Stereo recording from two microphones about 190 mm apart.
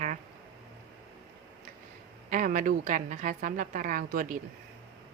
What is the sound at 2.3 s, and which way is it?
A woman's voice, 45° right (ahead or behind).